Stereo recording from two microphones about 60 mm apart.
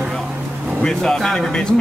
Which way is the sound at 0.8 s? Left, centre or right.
Centre.